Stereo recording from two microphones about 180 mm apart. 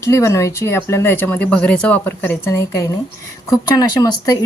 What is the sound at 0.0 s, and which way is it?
A woman's voice, 15° left (ahead or behind).